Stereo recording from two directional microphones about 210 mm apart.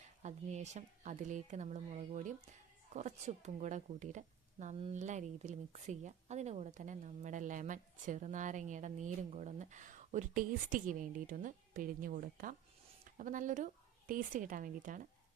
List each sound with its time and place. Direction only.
0.2 s a woman's voice: 35° right (ahead or behind)